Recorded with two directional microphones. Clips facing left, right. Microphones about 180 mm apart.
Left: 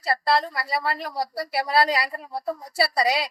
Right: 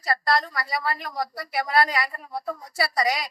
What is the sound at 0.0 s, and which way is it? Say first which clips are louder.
A woman's voice: left 2 dB; 25° left (ahead or behind).